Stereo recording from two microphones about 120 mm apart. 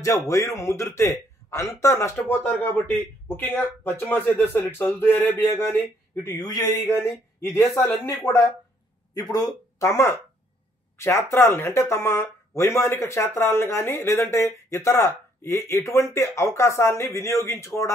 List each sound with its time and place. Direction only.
0.0 s a man's voice: 25° left (ahead or behind)
6.3 s speech: 30° left (ahead or behind)
7.1 s a man's voice: 20° left (ahead or behind)
9.1 s a man's voice: 30° left (ahead or behind)